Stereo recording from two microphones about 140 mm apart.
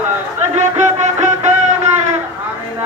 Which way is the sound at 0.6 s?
55° right (ahead or behind).